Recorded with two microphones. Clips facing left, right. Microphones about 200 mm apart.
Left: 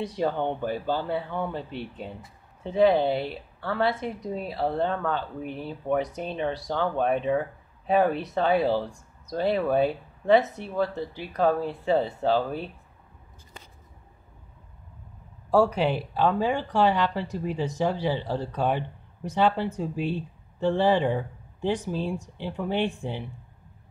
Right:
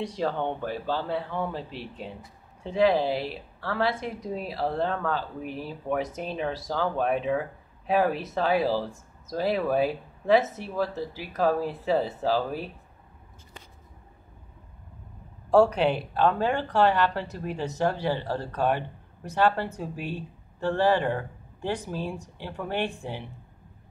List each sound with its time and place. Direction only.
0.0 s a woman's voice: 5° left (ahead or behind)
15.5 s speech: 10° left (ahead or behind)